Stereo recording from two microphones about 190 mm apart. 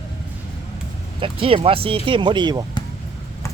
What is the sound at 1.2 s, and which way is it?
Speech, 30° right (ahead or behind).